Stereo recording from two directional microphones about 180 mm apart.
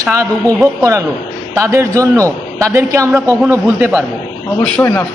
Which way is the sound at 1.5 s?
15° right (ahead or behind).